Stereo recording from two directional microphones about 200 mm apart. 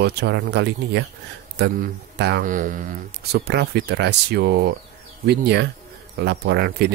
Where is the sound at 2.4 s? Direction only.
40° right (ahead or behind).